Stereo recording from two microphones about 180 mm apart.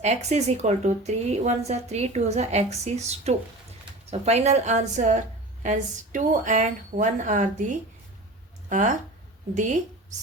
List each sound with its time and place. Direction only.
0.0 s speech: 40° right (ahead or behind)
8.7 s speech: 45° right (ahead or behind)